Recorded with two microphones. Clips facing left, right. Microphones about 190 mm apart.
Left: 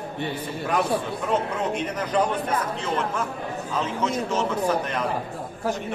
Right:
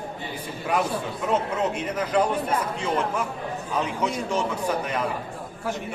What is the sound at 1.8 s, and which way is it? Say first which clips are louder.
A man's voice: even; 10° right (ahead or behind).